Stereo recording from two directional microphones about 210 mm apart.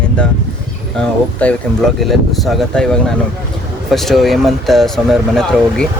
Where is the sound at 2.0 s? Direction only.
Centre (ahead or behind).